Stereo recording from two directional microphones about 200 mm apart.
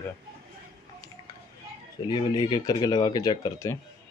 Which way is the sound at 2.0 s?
20° left (ahead or behind).